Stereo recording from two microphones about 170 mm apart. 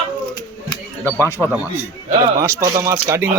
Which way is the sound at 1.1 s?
15° left (ahead or behind).